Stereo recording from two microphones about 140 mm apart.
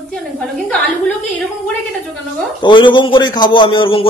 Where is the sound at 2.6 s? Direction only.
35° left (ahead or behind).